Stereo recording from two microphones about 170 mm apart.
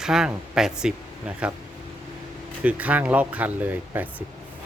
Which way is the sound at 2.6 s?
10° right (ahead or behind).